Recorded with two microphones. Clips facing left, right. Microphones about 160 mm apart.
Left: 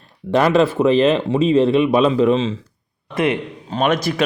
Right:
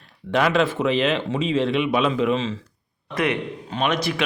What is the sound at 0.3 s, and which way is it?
Speech, 35° left (ahead or behind).